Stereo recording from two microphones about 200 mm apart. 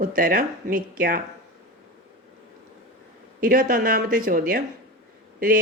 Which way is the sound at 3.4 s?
45° right (ahead or behind).